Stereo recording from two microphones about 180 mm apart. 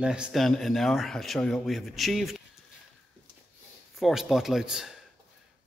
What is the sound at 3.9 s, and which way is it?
Speech, centre (ahead or behind).